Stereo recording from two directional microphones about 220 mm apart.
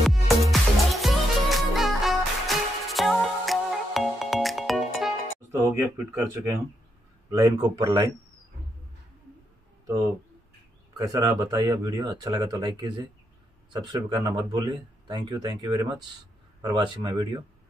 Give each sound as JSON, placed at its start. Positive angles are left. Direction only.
{"t": 0.0, "sound": "music", "side_deg": 0}
{"t": 5.5, "sound": "speech", "side_deg": -10}
{"t": 11.0, "sound": "speech", "side_deg": -15}